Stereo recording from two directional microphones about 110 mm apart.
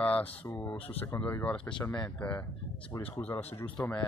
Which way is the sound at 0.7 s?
65° left (ahead or behind).